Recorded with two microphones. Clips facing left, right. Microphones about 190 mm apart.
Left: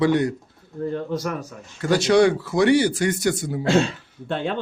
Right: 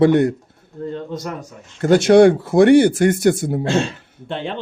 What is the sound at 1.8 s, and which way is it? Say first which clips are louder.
Speech: right 6 dB; 55° right (ahead or behind).